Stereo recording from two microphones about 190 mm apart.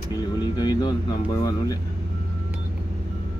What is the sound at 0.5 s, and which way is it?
Speech, 20° left (ahead or behind).